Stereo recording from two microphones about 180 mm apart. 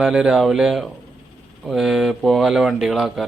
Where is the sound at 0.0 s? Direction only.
5° right (ahead or behind).